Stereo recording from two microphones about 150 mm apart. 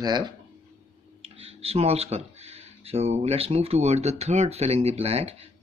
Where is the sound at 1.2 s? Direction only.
40° right (ahead or behind).